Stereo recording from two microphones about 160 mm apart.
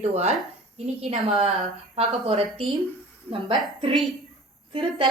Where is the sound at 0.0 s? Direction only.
40° right (ahead or behind).